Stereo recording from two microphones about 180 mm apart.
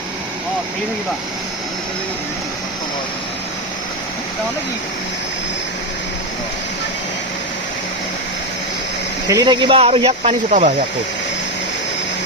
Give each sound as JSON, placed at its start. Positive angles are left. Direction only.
{"t": 9.3, "sound": "speech", "side_deg": -25}